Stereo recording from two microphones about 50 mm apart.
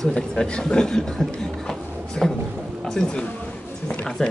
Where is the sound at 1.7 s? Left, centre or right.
Centre.